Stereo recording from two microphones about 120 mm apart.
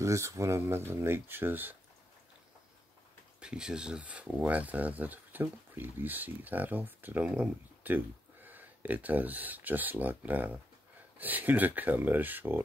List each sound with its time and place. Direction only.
0.0 s speech: 25° right (ahead or behind)
3.3 s speech: 5° right (ahead or behind)